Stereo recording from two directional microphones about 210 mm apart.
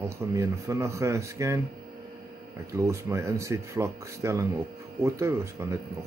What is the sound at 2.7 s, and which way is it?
Speech, 15° right (ahead or behind).